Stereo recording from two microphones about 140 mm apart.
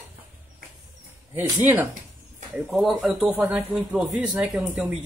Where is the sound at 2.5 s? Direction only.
Centre (ahead or behind).